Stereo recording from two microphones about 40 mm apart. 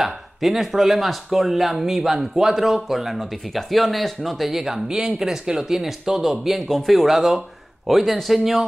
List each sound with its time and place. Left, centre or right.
0.0 s speech: centre
4.8 s speech: centre